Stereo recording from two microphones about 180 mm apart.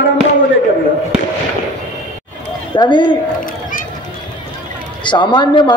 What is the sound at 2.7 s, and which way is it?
Speech, 25° left (ahead or behind).